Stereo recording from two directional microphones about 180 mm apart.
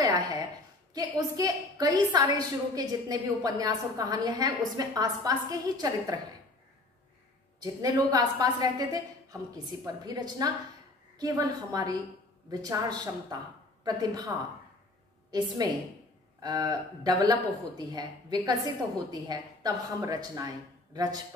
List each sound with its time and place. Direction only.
0.9 s a woman's voice: 20° right (ahead or behind)
7.6 s a woman's voice: 20° right (ahead or behind)
15.3 s a woman's voice: 20° right (ahead or behind)